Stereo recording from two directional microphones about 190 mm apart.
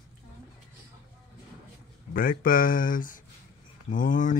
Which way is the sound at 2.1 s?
45° left (ahead or behind).